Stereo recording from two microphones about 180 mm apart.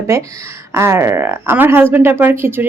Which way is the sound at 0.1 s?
15° right (ahead or behind).